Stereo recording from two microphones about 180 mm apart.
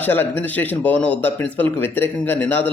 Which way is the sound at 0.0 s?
10° left (ahead or behind).